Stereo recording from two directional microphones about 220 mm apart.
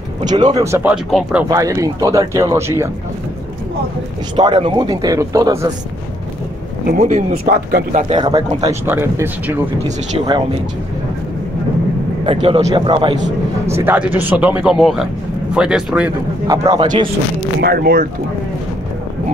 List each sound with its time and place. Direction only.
0.2 s speech: 20° right (ahead or behind)
1.5 s speech: 15° right (ahead or behind)
4.4 s speech: 20° right (ahead or behind)
6.9 s speech: 35° right (ahead or behind)
8.1 s speech: 20° right (ahead or behind)
9.8 s speech: 25° right (ahead or behind)
12.3 s speech: 25° right (ahead or behind)
13.8 s speech: 10° right (ahead or behind)
16.4 s speech: 15° right (ahead or behind)
17.6 s speech: 45° right (ahead or behind)